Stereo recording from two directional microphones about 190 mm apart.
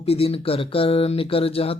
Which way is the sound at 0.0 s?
30° left (ahead or behind).